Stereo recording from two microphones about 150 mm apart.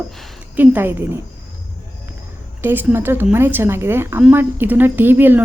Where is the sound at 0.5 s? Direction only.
10° right (ahead or behind).